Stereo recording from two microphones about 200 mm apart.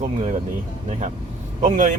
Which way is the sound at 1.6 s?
40° right (ahead or behind).